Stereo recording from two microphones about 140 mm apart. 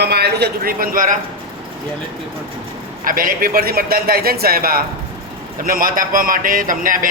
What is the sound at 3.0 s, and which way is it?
A man's voice, 90° right.